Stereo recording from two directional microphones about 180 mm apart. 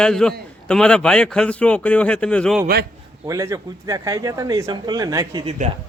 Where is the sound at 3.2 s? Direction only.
15° right (ahead or behind).